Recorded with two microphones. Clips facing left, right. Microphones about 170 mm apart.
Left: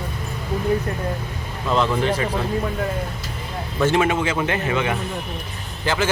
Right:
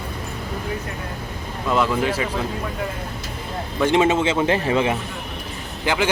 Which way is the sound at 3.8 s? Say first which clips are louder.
Right 2 dB; 20° right (ahead or behind).